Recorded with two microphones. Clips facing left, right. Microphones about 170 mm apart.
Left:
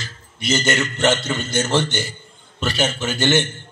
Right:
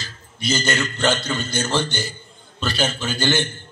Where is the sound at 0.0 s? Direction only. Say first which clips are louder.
Even; 20° left (ahead or behind).